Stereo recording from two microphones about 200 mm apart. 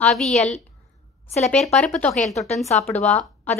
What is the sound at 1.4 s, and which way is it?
Speech, 5° left (ahead or behind).